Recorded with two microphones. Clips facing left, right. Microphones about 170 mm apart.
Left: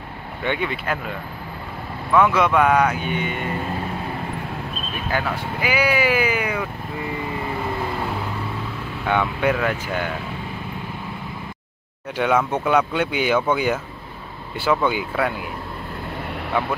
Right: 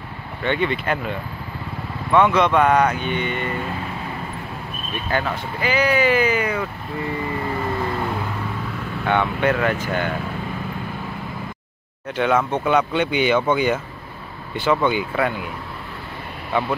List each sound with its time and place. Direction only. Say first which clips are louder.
0.4 s speech: right 3 dB; 10° left (ahead or behind)
2.1 s speech: right 1 dB; 5° left (ahead or behind)
5.1 s speech: right 1 dB; 10° left (ahead or behind)
9.0 s speech: right 1 dB; 5° left (ahead or behind)
12.2 s speech: even; 5° left (ahead or behind)